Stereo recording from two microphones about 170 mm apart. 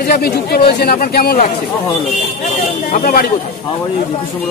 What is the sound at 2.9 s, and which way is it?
Speech, 50° left (ahead or behind).